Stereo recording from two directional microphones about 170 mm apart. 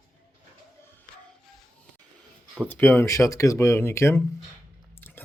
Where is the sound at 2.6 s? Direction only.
10° left (ahead or behind).